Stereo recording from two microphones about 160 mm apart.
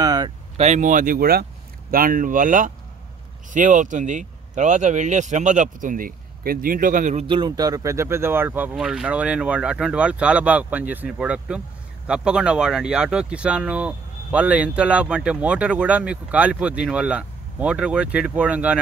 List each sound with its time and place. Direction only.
0.0 s a sound: 25° right (ahead or behind)
0.6 s speech: 45° right (ahead or behind)
7.2 s speech: 30° right (ahead or behind); by 18.8 s 10° right (ahead or behind)